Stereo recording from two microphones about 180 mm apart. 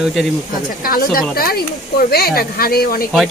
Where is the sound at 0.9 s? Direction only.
55° left (ahead or behind).